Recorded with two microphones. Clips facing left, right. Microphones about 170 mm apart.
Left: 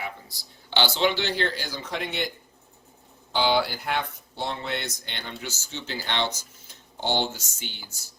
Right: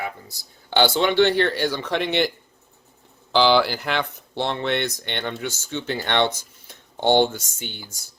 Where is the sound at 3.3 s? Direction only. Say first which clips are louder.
Right 6 dB; 80° right; by 7.8 s 55° right (ahead or behind).